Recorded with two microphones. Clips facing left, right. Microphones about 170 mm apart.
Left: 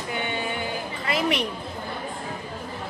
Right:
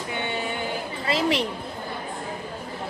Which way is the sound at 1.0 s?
30° right (ahead or behind).